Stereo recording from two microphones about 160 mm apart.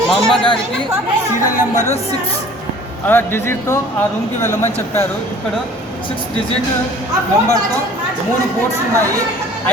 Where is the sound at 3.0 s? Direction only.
15° left (ahead or behind).